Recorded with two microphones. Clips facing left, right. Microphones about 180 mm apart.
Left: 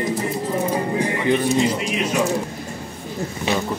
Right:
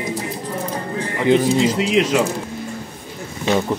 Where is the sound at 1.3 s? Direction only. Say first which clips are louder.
Right 4 dB; 90° right.